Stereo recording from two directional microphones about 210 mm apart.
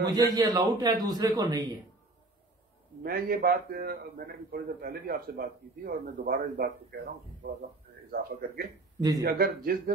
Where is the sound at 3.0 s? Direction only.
45° right (ahead or behind).